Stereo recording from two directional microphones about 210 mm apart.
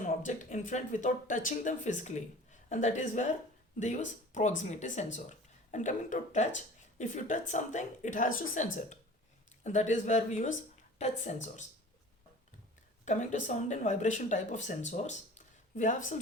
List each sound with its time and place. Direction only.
0.0 s speech: 35° left (ahead or behind)
13.1 s speech: 35° left (ahead or behind)